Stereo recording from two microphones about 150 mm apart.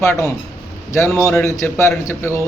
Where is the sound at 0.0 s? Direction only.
20° left (ahead or behind).